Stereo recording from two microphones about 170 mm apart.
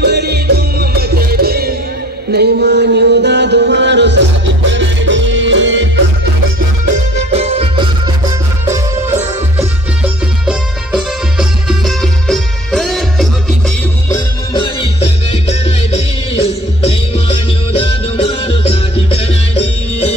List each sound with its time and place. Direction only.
0.0 s music: 75° right (ahead or behind)
2.3 s music: 75° right (ahead or behind)
7.2 s music: 35° right (ahead or behind)
8.6 s music: 15° right (ahead or behind); by 13.6 s centre (ahead or behind)
14.0 s music: 25° left (ahead or behind)
16.4 s music: 35° left (ahead or behind)